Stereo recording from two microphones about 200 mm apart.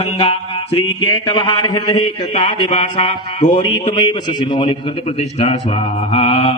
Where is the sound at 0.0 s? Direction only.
30° left (ahead or behind).